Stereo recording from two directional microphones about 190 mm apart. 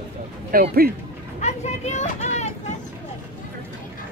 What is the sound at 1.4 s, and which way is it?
Vehicle, 35° left (ahead or behind).